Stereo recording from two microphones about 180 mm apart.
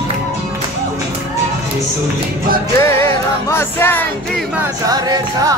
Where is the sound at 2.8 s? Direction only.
15° left (ahead or behind).